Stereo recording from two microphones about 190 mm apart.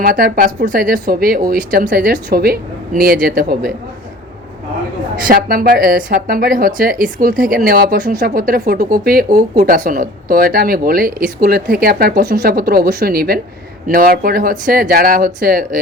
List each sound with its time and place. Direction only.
0.0 s speech: 50° right (ahead or behind)
5.3 s speech: 50° right (ahead or behind)